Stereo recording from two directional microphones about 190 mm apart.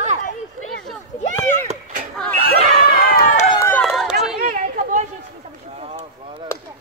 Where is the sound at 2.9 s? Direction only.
50° left (ahead or behind).